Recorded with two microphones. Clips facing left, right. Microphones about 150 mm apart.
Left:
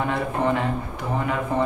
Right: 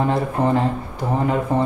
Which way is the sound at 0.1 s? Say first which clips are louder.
Right 4 dB; 35° right (ahead or behind).